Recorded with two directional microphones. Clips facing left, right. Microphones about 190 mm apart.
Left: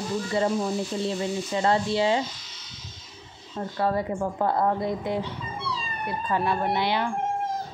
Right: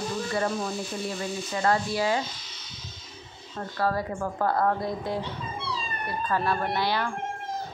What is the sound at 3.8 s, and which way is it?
Speech, 20° left (ahead or behind).